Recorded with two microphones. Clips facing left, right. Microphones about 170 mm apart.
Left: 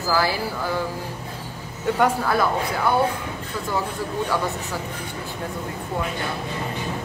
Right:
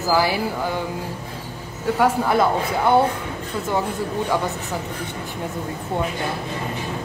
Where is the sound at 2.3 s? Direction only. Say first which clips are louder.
Right 3 dB; 25° right (ahead or behind).